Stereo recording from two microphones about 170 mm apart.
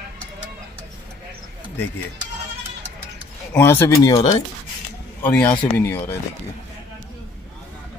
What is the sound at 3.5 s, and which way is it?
Speech, 15° left (ahead or behind).